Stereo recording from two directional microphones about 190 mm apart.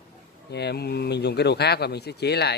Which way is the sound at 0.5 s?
60° left (ahead or behind).